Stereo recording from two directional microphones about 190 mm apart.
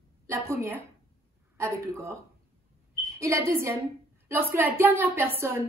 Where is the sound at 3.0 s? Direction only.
15° right (ahead or behind).